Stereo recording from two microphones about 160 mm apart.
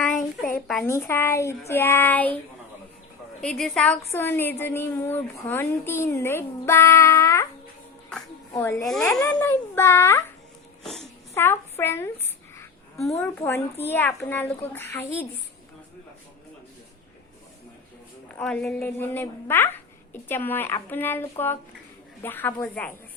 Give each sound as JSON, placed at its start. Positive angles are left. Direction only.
{"t": 0.9, "sound": "speech", "side_deg": 15}
{"t": 3.4, "sound": "a woman's voice", "side_deg": 5}
{"t": 8.1, "sound": "music", "side_deg": 15}
{"t": 8.8, "sound": "a woman's voice", "side_deg": 5}
{"t": 11.3, "sound": "speech", "side_deg": 15}
{"t": 13.1, "sound": "speech", "side_deg": 15}
{"t": 18.3, "sound": "a woman's voice", "side_deg": 5}